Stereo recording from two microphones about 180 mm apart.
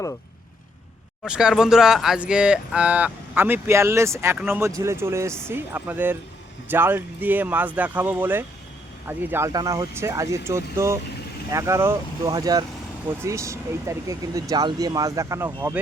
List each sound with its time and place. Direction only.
1.2 s speech: 5° right (ahead or behind)